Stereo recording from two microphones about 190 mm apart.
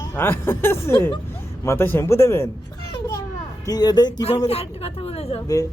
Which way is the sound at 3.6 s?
20° left (ahead or behind).